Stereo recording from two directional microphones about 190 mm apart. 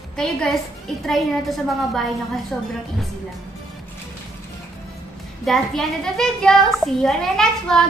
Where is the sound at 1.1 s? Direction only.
Centre (ahead or behind).